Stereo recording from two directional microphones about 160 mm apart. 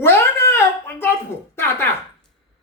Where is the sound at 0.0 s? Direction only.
15° left (ahead or behind).